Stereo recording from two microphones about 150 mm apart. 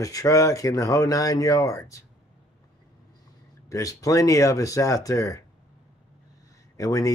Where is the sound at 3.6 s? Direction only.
20° left (ahead or behind).